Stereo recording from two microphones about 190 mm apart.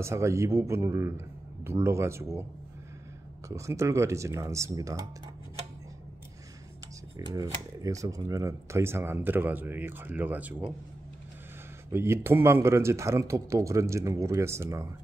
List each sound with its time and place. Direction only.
0.0 s speech: 15° right (ahead or behind)
3.4 s speech: 15° right (ahead or behind)
7.2 s speech: 20° right (ahead or behind)
11.9 s speech: 15° right (ahead or behind)